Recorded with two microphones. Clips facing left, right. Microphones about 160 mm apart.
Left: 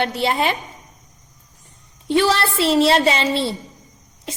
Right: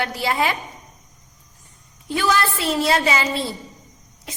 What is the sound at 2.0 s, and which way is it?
A woman's voice, 30° left (ahead or behind).